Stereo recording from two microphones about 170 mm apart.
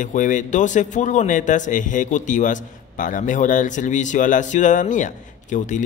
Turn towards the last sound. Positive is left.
turn(degrees=45)  # may be behind; listen again after turning